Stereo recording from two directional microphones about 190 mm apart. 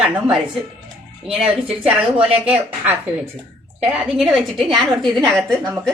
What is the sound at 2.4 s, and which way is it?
A woman's voice, 10° right (ahead or behind).